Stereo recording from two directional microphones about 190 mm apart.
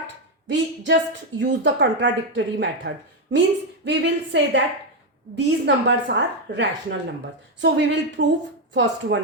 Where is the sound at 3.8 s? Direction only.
65° right (ahead or behind).